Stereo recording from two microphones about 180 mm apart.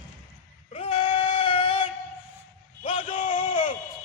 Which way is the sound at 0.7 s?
30° left (ahead or behind).